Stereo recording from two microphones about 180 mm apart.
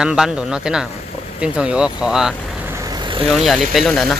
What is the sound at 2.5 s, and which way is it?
Vehicle, 15° right (ahead or behind).